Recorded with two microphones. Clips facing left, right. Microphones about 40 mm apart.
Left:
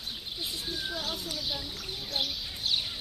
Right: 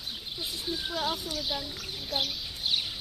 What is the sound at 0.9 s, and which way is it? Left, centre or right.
A child's voice, centre.